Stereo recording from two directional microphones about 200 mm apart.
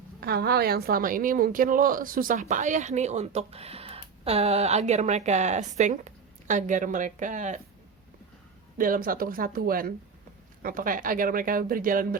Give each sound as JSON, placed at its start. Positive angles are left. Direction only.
{"t": 0.2, "sound": "a woman's voice", "side_deg": -55}
{"t": 8.8, "sound": "speech", "side_deg": -45}